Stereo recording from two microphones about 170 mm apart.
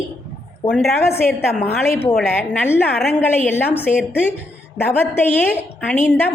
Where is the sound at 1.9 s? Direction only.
15° left (ahead or behind).